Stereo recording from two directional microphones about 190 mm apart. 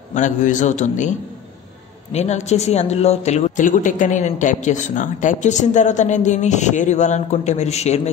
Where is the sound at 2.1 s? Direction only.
35° left (ahead or behind).